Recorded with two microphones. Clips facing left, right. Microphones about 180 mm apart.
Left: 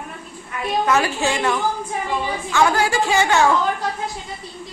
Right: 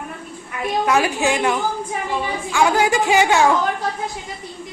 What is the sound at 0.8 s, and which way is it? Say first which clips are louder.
A woman's voice: right 2 dB; 15° right (ahead or behind).